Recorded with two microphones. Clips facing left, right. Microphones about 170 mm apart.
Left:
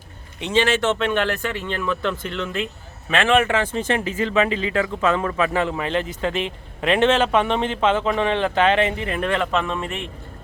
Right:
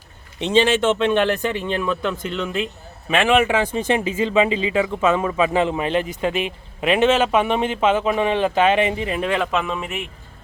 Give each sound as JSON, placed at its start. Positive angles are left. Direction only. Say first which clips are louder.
{"t": 0.3, "sound": "speech", "louder": "right 3 dB", "side_deg": -20}